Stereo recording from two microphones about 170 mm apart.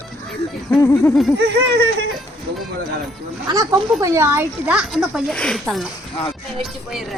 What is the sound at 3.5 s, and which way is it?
Speech, 20° right (ahead or behind).